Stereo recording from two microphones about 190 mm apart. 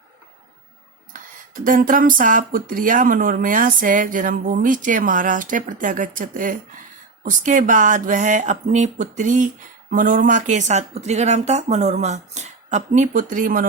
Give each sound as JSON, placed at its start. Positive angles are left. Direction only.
{"t": 1.6, "sound": "speech", "side_deg": -45}